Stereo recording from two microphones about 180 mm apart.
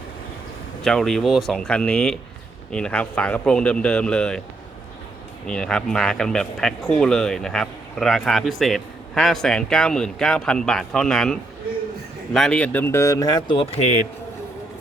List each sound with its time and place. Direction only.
0.9 s speech: 5° left (ahead or behind)
5.5 s speech: 5° left (ahead or behind); by 13.8 s 30° left (ahead or behind)